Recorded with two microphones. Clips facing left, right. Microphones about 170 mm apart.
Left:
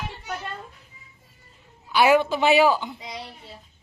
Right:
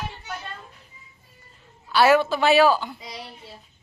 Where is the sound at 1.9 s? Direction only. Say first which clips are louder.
Right 1 dB; 15° left (ahead or behind).